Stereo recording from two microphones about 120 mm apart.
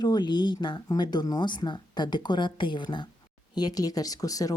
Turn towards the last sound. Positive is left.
turn(degrees=30)  # may be behind; listen again after turning